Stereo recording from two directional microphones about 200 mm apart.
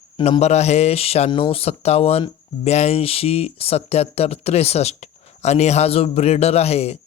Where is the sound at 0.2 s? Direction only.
30° left (ahead or behind).